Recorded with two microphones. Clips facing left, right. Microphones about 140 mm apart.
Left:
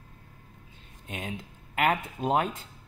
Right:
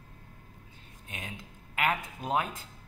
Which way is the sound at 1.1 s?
30° left (ahead or behind).